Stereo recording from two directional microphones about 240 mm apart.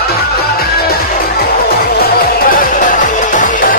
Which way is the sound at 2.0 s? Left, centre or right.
Left.